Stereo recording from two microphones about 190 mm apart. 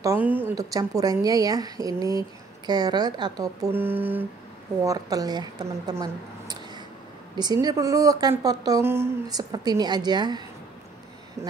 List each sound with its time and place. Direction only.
0.0 s a woman's voice: 15° right (ahead or behind)